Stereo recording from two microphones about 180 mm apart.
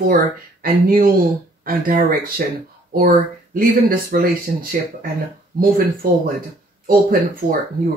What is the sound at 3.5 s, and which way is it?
Speech, 55° right (ahead or behind).